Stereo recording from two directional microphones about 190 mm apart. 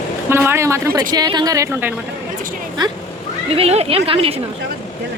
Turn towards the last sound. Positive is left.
turn(degrees=-30)  # may be behind; listen again after turning